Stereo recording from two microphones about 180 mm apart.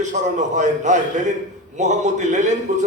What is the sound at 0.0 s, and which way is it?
A man's voice, 40° right (ahead or behind).